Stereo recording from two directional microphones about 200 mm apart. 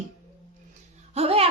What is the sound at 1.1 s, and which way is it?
Speech, 30° right (ahead or behind).